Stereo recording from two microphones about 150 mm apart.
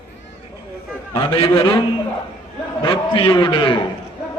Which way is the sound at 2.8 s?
35° left (ahead or behind).